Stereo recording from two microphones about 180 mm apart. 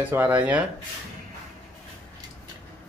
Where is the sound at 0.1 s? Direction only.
10° right (ahead or behind).